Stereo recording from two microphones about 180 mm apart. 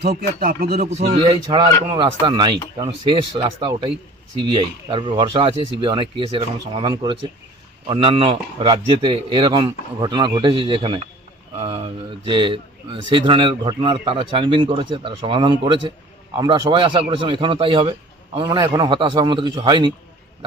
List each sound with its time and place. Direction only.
0.0 s speech: 60° right (ahead or behind)
1.3 s a man's voice: 30° right (ahead or behind)